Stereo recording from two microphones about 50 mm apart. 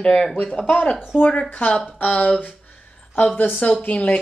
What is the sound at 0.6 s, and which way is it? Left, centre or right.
Speech, left.